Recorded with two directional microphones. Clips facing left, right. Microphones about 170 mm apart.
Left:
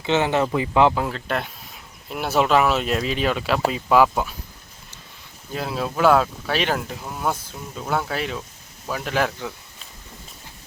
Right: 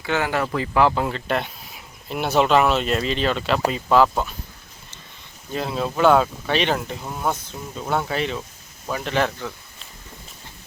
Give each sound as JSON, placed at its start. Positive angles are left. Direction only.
{"t": 0.0, "sound": "speech", "side_deg": 20}
{"t": 0.9, "sound": "speech", "side_deg": 0}
{"t": 5.5, "sound": "speech", "side_deg": 0}